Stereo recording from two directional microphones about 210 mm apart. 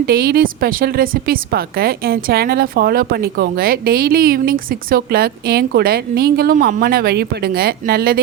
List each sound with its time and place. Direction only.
0.0 s a woman's voice: 45° right (ahead or behind)